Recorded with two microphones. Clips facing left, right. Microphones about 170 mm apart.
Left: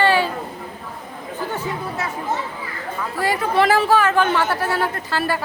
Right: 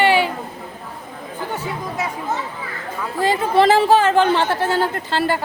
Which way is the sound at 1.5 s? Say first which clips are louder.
Right 2 dB; 10° right (ahead or behind).